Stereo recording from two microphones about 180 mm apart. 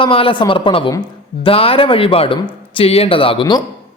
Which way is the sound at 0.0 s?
30° left (ahead or behind).